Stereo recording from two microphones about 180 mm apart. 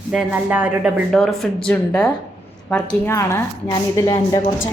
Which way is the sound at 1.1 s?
Centre (ahead or behind).